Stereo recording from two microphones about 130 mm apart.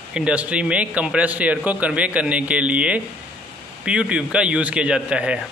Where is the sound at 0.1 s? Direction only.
10° right (ahead or behind).